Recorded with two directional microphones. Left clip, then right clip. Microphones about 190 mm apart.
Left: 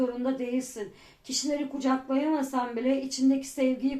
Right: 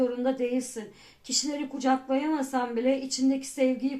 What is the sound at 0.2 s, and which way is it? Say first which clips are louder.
Speech: right 3 dB; 30° right (ahead or behind).